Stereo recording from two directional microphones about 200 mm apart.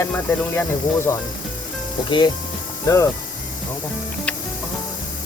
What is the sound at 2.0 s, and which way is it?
Speech, 25° left (ahead or behind).